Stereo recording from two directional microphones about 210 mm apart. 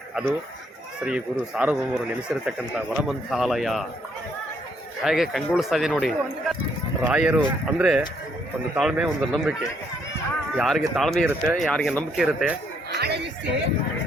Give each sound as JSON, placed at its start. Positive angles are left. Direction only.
{"t": 0.1, "sound": "a man's voice", "side_deg": -5}
{"t": 5.0, "sound": "a man's voice", "side_deg": 0}
{"t": 10.6, "sound": "a man's voice", "side_deg": 0}
{"t": 13.0, "sound": "music", "side_deg": -50}